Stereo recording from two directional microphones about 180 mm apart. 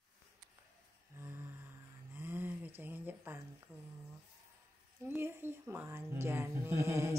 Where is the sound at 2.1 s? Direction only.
10° right (ahead or behind).